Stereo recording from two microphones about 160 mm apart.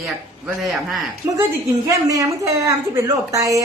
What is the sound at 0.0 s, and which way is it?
A man's voice, centre (ahead or behind).